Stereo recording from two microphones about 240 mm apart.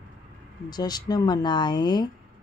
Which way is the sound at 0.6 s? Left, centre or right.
Centre.